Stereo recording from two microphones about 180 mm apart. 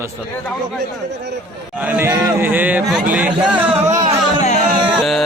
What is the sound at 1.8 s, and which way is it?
Speech, 10° right (ahead or behind).